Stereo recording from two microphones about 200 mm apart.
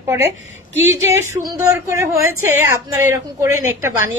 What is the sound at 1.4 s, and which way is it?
A woman's voice, 15° right (ahead or behind).